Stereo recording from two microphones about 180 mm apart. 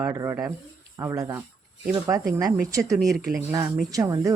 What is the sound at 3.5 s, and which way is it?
Speech, 20° right (ahead or behind).